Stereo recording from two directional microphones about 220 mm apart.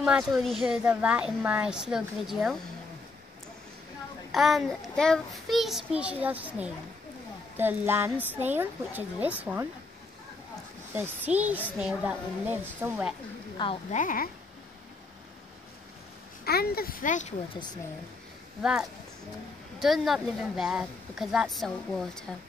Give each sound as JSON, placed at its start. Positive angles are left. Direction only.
{"t": 0.0, "sound": "a woman's voice", "side_deg": 0}
{"t": 4.3, "sound": "a woman's voice", "side_deg": 0}
{"t": 11.0, "sound": "a woman's voice", "side_deg": -5}
{"t": 13.6, "sound": "a woman's voice", "side_deg": 20}
{"t": 13.9, "sound": "speech", "side_deg": 40}
{"t": 16.4, "sound": "a child's voice", "side_deg": 45}
{"t": 18.6, "sound": "a woman's voice", "side_deg": -5}